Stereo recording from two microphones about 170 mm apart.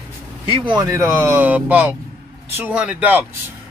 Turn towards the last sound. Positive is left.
turn(degrees=-10)  # may be behind; listen again after turning